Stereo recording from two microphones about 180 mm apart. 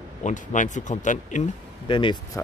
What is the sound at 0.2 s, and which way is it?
Speech, 45° left (ahead or behind).